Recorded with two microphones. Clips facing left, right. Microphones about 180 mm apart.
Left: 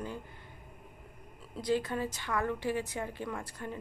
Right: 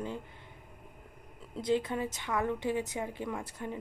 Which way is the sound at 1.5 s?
20° right (ahead or behind).